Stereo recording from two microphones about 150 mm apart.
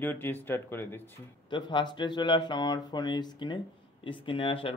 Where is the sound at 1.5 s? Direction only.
30° left (ahead or behind).